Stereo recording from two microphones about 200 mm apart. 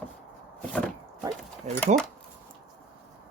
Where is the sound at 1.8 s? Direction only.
5° left (ahead or behind).